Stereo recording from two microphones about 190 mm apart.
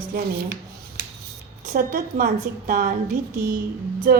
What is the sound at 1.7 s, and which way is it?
Speech, 50° right (ahead or behind).